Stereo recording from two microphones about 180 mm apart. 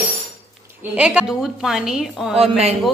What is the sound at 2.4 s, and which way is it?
Speech, 35° right (ahead or behind).